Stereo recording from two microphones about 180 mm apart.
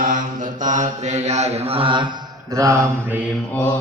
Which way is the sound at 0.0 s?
45° right (ahead or behind).